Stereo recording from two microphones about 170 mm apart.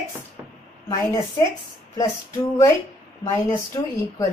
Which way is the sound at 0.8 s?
20° left (ahead or behind).